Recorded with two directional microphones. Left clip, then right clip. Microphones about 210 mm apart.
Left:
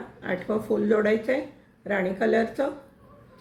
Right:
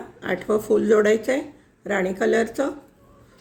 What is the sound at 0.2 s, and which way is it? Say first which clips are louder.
Speech: right 5 dB; 50° right (ahead or behind).